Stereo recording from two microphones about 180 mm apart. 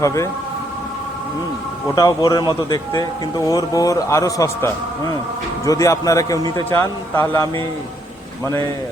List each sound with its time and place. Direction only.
0.0 s speech: 15° left (ahead or behind)
2.0 s a man's voice: 20° left (ahead or behind)